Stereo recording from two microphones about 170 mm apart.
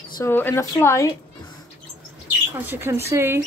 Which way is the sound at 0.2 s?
10° left (ahead or behind).